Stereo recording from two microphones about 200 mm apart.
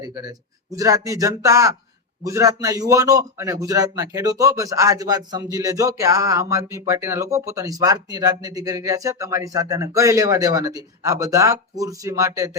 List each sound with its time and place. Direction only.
0.7 s a man's voice: 15° right (ahead or behind)